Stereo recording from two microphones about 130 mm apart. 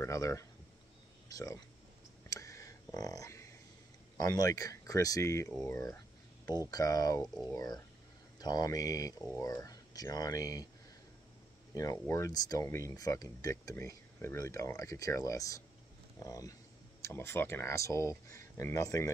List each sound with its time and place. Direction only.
0.0 s speech: 25° left (ahead or behind)
2.2 s a sound: 25° left (ahead or behind)
4.2 s speech: 30° left (ahead or behind)
6.7 s speech: 30° left (ahead or behind)
11.7 s speech: 25° left (ahead or behind)